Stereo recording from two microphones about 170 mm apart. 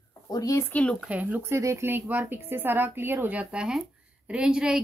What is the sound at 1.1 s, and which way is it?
A woman's voice, 10° right (ahead or behind).